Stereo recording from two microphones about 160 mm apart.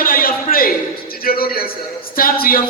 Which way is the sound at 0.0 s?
65° left (ahead or behind).